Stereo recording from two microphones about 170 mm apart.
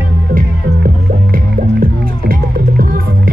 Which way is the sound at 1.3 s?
55° right (ahead or behind).